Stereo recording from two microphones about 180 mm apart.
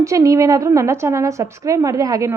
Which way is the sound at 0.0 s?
20° right (ahead or behind).